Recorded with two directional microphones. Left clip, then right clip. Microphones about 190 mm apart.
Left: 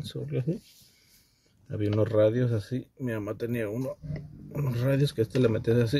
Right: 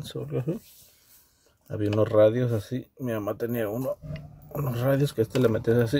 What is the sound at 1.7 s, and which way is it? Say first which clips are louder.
Speech: right 3 dB; 10° left (ahead or behind).